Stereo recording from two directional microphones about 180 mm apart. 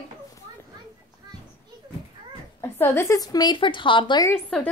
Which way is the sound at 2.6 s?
15° left (ahead or behind).